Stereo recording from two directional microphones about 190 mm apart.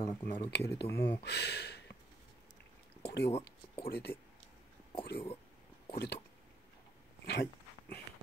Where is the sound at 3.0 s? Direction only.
60° left (ahead or behind).